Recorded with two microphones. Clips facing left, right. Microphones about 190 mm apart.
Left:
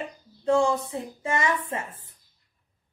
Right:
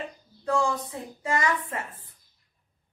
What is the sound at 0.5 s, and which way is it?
A woman's voice, 25° left (ahead or behind).